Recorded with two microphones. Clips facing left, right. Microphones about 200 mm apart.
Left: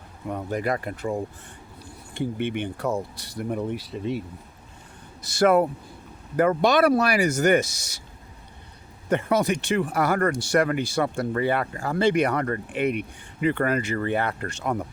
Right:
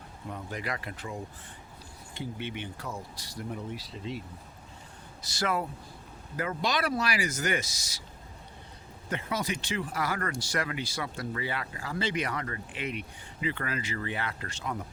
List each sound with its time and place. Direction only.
0.3 s speech: 55° left (ahead or behind)
2.4 s speech: 60° left (ahead or behind)
5.2 s speech: 50° left (ahead or behind)
9.0 s speech: 65° left (ahead or behind)